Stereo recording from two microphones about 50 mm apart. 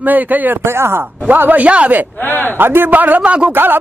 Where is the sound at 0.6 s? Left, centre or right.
Right.